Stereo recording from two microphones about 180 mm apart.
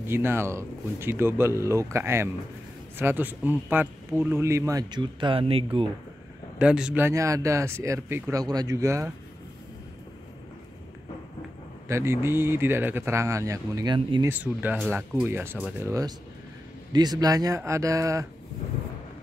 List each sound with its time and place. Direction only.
0.0 s speech: 10° right (ahead or behind); by 5.9 s 30° right (ahead or behind)
6.6 s speech: 5° right (ahead or behind)
11.9 s speech: 15° right (ahead or behind)
14.3 s speech: 10° right (ahead or behind)